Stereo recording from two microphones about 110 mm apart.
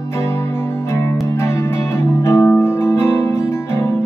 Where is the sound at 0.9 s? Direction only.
25° left (ahead or behind).